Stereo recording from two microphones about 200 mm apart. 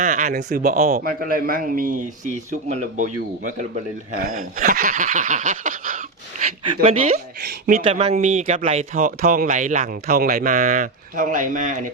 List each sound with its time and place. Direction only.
0.0 s speech: 35° right (ahead or behind)
6.8 s speech: 30° right (ahead or behind)
7.4 s speech: 45° right (ahead or behind)